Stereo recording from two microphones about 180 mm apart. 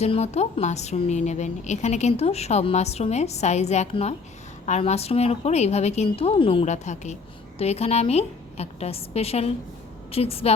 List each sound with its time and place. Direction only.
0.0 s a woman's voice: 35° left (ahead or behind)